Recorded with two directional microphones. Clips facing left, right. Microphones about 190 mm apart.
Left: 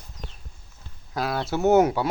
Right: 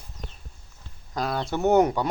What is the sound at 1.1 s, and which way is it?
Speech, 5° left (ahead or behind).